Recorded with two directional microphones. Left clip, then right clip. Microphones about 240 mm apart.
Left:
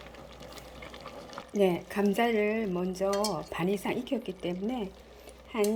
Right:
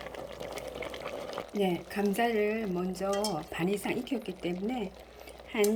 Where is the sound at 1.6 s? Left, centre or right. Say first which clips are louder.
Left 4 dB; centre.